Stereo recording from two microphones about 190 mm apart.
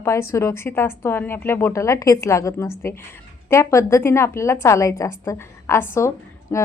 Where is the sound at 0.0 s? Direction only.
15° left (ahead or behind).